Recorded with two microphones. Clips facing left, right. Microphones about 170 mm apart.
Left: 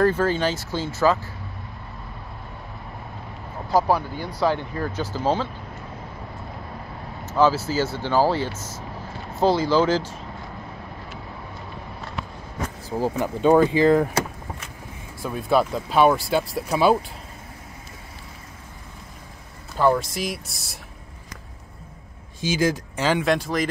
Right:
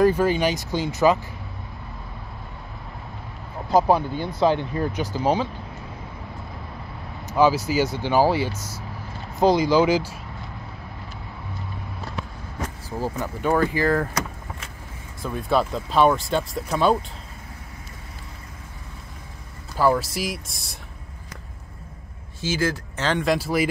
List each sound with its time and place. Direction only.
0.0 s speech: 15° right (ahead or behind)
3.7 s speech: 20° right (ahead or behind)
7.2 s speech: 15° right (ahead or behind)
12.9 s speech: 15° left (ahead or behind)
15.2 s speech: 5° left (ahead or behind)
19.8 s speech: 5° right (ahead or behind)
22.4 s speech: 15° left (ahead or behind)
23.2 s speech: 5° right (ahead or behind)